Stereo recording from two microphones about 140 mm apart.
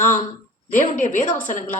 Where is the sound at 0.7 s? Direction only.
65° left (ahead or behind).